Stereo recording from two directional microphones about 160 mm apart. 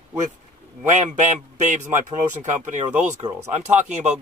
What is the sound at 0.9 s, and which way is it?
Speech, 50° right (ahead or behind).